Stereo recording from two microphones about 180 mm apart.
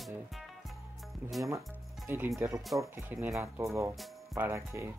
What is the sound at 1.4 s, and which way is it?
Speech, 15° right (ahead or behind).